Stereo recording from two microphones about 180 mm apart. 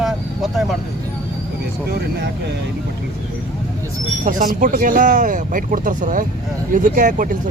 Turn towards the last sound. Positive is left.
turn(degrees=-50)  # may be behind; listen again after turning